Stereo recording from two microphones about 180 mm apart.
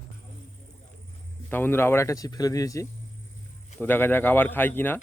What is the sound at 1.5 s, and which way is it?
Speech, 10° left (ahead or behind).